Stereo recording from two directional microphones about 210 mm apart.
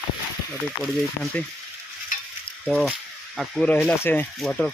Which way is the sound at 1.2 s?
5° left (ahead or behind).